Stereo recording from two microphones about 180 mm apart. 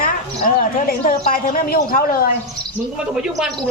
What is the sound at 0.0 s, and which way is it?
A woman's voice, 50° left (ahead or behind).